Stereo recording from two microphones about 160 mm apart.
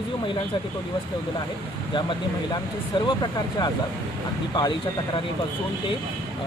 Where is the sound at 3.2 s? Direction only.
25° left (ahead or behind).